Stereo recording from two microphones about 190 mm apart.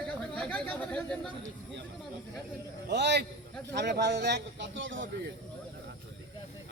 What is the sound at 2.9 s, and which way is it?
Speech, 65° right (ahead or behind).